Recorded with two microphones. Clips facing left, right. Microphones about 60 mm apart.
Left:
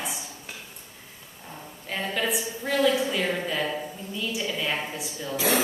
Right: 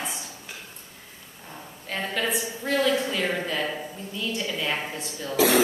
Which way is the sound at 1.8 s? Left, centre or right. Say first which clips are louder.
Even; centre.